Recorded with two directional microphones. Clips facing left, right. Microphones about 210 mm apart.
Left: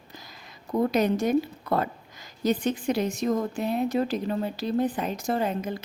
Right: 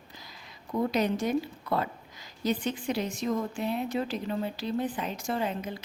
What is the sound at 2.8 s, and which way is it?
Speech, 45° left (ahead or behind).